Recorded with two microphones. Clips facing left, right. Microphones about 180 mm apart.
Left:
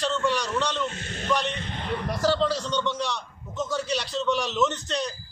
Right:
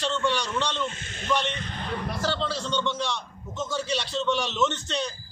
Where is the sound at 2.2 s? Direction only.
Centre (ahead or behind).